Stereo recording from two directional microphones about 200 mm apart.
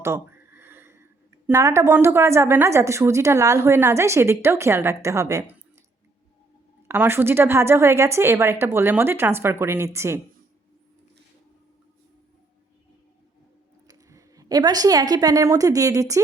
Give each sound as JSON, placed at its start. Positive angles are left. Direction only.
{"t": 0.0, "sound": "a sound", "side_deg": -10}
{"t": 1.5, "sound": "a woman's voice", "side_deg": -15}
{"t": 6.8, "sound": "a woman's voice", "side_deg": -10}
{"t": 13.8, "sound": "a woman's voice", "side_deg": -15}